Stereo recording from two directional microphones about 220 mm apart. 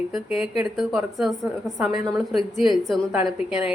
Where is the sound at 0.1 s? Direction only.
5° right (ahead or behind).